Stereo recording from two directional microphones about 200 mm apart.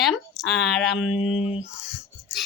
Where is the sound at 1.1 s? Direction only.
30° left (ahead or behind).